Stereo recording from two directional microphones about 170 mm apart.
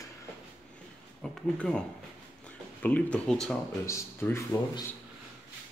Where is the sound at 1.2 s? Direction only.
5° left (ahead or behind).